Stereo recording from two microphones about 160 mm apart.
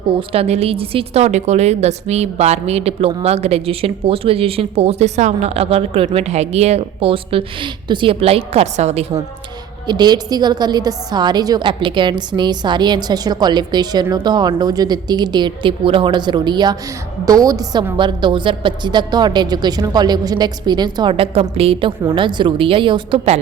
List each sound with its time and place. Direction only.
0.1 s a woman's voice: 35° right (ahead or behind)
9.8 s a woman's voice: 25° right (ahead or behind)